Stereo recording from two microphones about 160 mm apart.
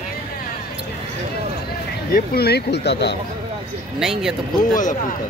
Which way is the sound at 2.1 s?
80° left.